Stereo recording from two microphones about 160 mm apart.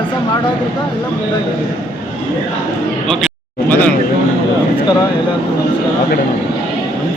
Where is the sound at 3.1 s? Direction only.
5° left (ahead or behind).